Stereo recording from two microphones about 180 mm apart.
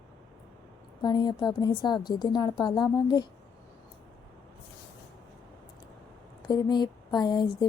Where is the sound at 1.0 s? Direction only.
25° left (ahead or behind).